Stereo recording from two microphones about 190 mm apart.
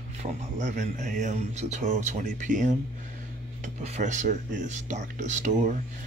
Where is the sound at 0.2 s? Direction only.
40° right (ahead or behind).